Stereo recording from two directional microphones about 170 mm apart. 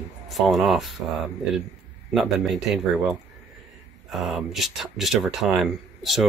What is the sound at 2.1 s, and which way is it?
Speech, centre (ahead or behind).